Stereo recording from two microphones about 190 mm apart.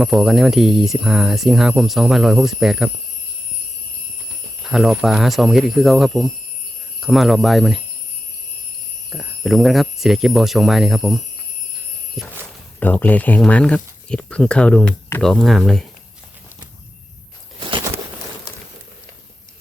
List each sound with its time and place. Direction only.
0.0 s speech: centre (ahead or behind)
4.6 s speech: centre (ahead or behind)
9.0 s speech: centre (ahead or behind)
17.6 s a sound: 25° right (ahead or behind)